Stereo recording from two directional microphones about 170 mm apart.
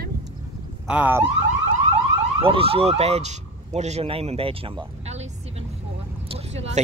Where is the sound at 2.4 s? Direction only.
35° right (ahead or behind).